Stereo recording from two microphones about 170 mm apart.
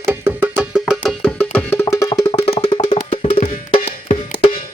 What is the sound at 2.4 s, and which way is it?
Wood block, 30° left (ahead or behind).